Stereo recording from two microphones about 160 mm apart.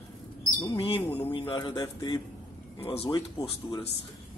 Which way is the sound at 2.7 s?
35° left (ahead or behind).